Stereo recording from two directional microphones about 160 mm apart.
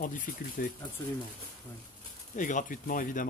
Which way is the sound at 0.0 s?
60° left (ahead or behind).